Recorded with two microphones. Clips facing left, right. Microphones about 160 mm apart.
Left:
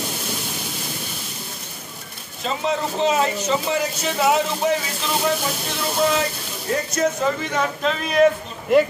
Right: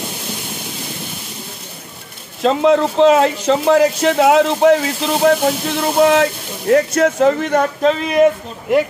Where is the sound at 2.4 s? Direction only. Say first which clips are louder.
Right 11 dB; 80° right; by 7.6 s 65° right (ahead or behind).